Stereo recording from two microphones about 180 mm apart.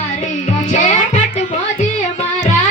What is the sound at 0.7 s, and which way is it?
Music, 40° left (ahead or behind).